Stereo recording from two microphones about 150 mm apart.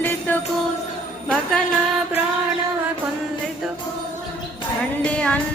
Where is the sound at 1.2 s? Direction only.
5° left (ahead or behind).